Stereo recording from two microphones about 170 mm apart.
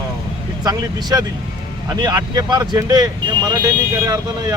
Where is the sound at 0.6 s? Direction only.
25° right (ahead or behind).